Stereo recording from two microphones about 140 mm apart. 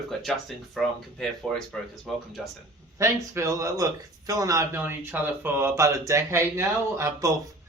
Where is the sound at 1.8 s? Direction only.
5° left (ahead or behind).